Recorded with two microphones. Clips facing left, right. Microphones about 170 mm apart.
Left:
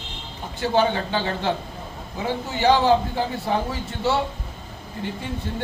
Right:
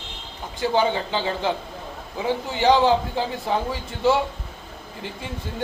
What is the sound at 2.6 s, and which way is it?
Speech, 15° right (ahead or behind).